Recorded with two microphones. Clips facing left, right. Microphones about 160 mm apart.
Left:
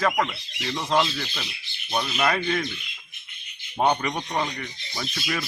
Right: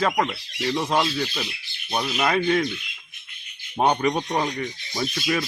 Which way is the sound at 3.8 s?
25° right (ahead or behind).